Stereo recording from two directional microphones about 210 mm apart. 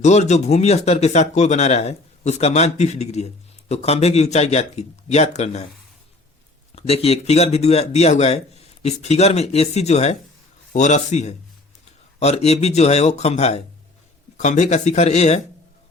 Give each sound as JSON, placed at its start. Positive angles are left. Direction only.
{"t": 0.0, "sound": "speech", "side_deg": 35}
{"t": 6.7, "sound": "speech", "side_deg": 30}